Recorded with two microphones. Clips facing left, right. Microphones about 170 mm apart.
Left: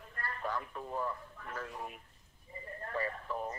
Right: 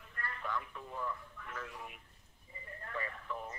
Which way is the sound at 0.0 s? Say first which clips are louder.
Left 4 dB; 40° left (ahead or behind).